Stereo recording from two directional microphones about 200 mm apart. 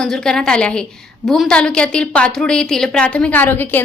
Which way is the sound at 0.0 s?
5° left (ahead or behind).